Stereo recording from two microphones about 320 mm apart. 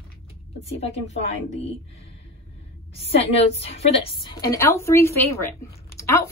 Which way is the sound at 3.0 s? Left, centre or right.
Centre.